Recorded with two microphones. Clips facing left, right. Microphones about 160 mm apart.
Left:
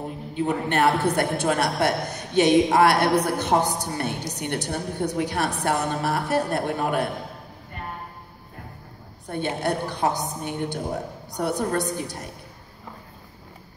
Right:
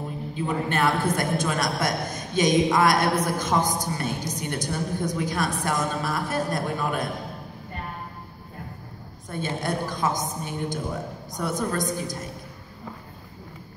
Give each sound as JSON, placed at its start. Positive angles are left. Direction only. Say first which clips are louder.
{"t": 0.4, "sound": "a man's voice", "louder": "left 3 dB", "side_deg": 65}
{"t": 9.6, "sound": "a man's voice", "louder": "left 2 dB", "side_deg": 65}